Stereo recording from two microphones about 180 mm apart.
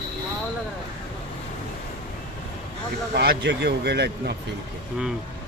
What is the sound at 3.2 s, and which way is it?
Speech, 65° right (ahead or behind).